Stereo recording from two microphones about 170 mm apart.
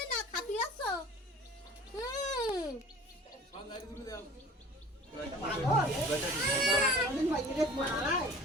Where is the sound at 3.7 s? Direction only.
20° left (ahead or behind).